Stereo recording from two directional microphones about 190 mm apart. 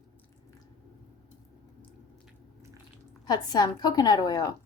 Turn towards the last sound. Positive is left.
turn(degrees=20)  # may be behind; listen again after turning